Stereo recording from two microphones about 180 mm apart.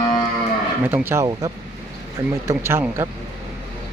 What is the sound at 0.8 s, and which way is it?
Speech, 10° right (ahead or behind).